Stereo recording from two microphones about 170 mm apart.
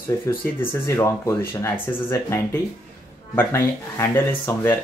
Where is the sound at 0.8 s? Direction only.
15° left (ahead or behind).